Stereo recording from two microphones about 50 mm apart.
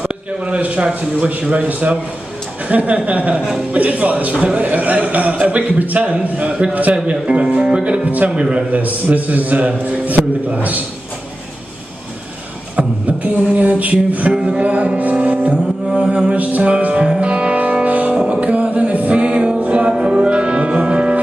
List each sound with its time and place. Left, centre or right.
0.0 s a man's voice: right
7.2 s a man's voice: centre
8.0 s a man's voice: right
8.4 s a man's voice: centre
8.7 s a man's voice: right
12.7 s music: right
14.3 s music: centre
14.6 s music: right
15.9 s a man's voice: centre
16.7 s music: right